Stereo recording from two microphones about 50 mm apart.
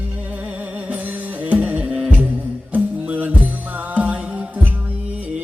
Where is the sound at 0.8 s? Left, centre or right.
Right.